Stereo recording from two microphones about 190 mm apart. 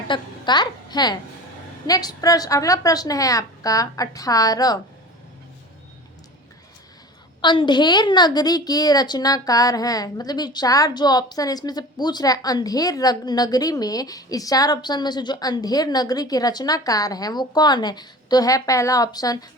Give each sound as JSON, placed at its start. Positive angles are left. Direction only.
{"t": 0.1, "sound": "a woman's voice", "side_deg": 25}
{"t": 7.4, "sound": "a woman's voice", "side_deg": 25}